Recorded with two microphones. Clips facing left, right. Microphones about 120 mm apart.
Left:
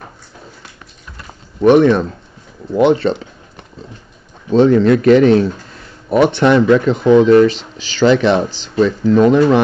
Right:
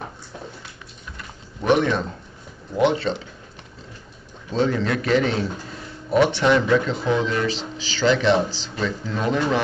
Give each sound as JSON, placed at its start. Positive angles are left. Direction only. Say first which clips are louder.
{"t": 1.6, "sound": "speech", "louder": "left 10 dB", "side_deg": 55}
{"t": 4.5, "sound": "speech", "louder": "left 12 dB", "side_deg": 60}